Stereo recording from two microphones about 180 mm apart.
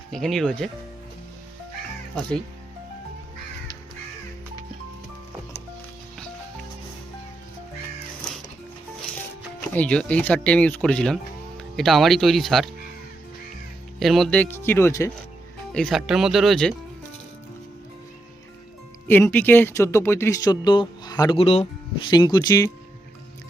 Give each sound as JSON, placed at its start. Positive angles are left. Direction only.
{"t": 0.1, "sound": "speech", "side_deg": 0}
{"t": 9.7, "sound": "speech", "side_deg": 5}
{"t": 14.0, "sound": "speech", "side_deg": 0}
{"t": 15.7, "sound": "speech", "side_deg": 0}
{"t": 19.0, "sound": "speech", "side_deg": 10}